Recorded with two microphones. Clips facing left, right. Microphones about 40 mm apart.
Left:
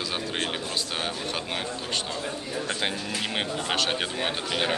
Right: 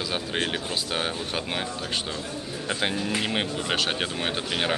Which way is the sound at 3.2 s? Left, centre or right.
Centre.